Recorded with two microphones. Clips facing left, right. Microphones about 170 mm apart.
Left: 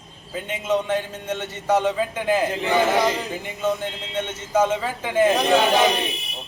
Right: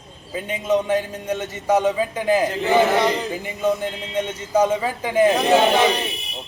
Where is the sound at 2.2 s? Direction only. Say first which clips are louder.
Right 3 dB; 15° right (ahead or behind).